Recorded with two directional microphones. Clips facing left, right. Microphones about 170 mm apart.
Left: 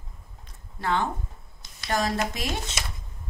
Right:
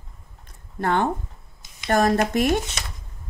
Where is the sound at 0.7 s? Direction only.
55° right (ahead or behind).